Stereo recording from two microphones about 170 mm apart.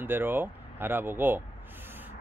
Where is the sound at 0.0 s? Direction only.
10° right (ahead or behind).